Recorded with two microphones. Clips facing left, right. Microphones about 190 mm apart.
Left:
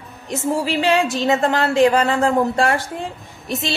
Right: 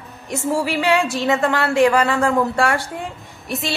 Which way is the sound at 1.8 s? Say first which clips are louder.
Even; 35° left (ahead or behind).